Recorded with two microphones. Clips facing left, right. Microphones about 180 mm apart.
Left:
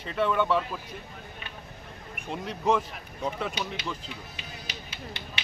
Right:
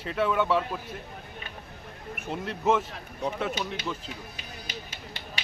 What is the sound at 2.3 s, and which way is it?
Speech, 5° right (ahead or behind).